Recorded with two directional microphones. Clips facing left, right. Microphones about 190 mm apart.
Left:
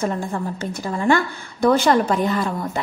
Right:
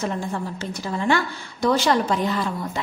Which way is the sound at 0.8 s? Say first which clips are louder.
Left 3 dB; 50° left (ahead or behind).